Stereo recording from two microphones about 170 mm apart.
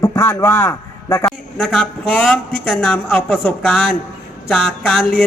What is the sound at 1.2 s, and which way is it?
Speech, 5° left (ahead or behind).